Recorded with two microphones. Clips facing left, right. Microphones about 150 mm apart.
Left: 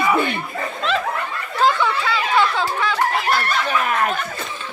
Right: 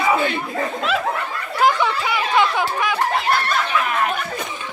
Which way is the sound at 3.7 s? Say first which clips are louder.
Left 1 dB; 45° left (ahead or behind).